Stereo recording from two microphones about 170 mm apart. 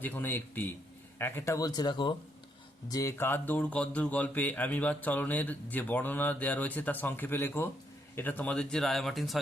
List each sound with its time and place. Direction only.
0.0 s speech: 10° left (ahead or behind)